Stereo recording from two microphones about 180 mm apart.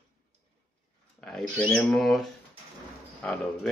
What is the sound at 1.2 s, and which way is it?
Speech, 5° left (ahead or behind).